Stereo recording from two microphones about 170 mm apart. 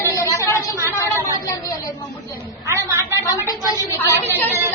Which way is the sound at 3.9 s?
20° left (ahead or behind).